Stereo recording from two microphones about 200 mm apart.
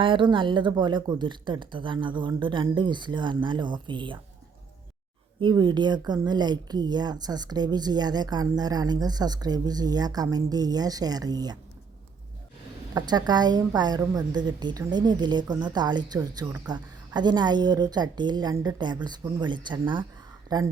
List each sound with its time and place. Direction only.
0.0 s a woman's voice: 25° right (ahead or behind)
5.4 s a woman's voice: 20° right (ahead or behind)
12.9 s a woman's voice: 20° right (ahead or behind)